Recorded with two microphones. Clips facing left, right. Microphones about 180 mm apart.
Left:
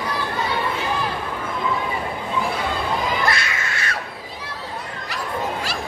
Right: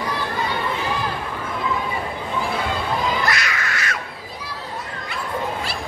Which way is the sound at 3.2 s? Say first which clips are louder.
Even; 30° left (ahead or behind).